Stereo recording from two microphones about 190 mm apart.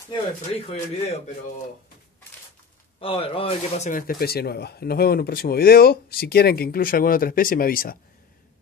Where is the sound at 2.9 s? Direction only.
30° left (ahead or behind).